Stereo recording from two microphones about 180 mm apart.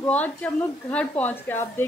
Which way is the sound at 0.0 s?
10° left (ahead or behind).